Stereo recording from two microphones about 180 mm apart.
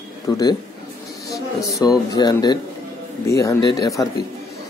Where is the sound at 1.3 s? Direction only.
20° left (ahead or behind).